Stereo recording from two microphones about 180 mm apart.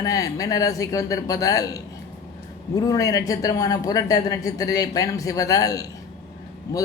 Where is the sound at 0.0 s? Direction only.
20° left (ahead or behind).